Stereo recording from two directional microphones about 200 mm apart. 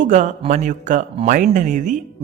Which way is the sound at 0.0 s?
35° right (ahead or behind).